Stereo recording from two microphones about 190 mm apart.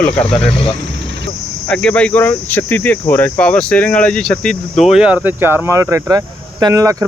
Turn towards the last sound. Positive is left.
turn(degrees=-15)  # may be behind; listen again after turning